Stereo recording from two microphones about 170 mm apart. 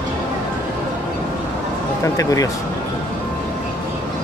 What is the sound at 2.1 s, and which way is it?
Speech, 20° left (ahead or behind).